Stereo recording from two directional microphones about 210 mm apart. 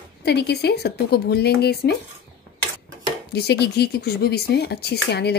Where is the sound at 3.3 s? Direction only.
50° left (ahead or behind).